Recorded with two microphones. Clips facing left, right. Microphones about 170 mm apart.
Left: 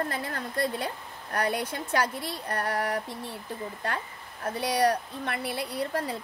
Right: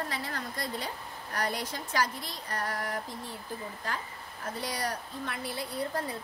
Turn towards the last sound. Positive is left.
turn(degrees=75)  # may be behind; listen again after turning